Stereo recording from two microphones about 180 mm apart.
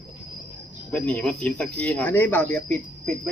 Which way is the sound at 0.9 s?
5° left (ahead or behind).